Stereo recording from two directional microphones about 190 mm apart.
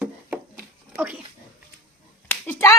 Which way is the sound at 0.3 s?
10° right (ahead or behind).